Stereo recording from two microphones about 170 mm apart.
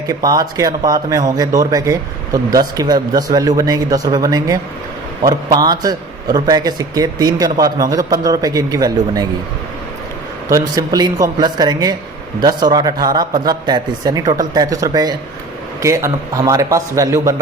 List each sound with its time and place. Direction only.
0.1 s a man's voice: 20° right (ahead or behind)
10.5 s a man's voice: 20° right (ahead or behind)